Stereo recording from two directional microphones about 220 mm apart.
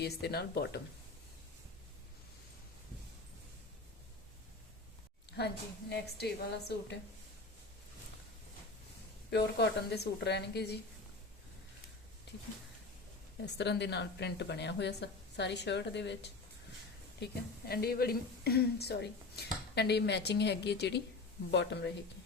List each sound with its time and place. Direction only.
0.0 s a woman's voice: 45° left (ahead or behind)
5.9 s a woman's voice: 50° left (ahead or behind)
9.3 s a woman's voice: 50° left (ahead or behind)
13.4 s a woman's voice: 50° left (ahead or behind)
17.2 s a woman's voice: 45° left (ahead or behind)